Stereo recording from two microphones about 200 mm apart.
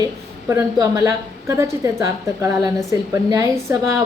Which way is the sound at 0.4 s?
15° right (ahead or behind).